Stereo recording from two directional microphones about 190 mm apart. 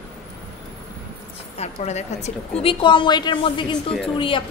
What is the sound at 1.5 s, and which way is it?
A woman's voice, 35° left (ahead or behind).